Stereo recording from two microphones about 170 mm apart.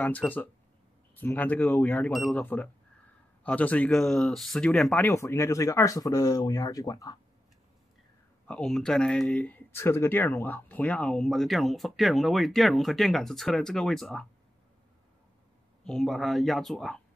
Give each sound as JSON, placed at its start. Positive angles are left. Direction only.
{"t": 0.0, "sound": "speech", "side_deg": 10}
{"t": 5.0, "sound": "speech", "side_deg": 15}
{"t": 8.5, "sound": "speech", "side_deg": 5}
{"t": 15.8, "sound": "speech", "side_deg": 0}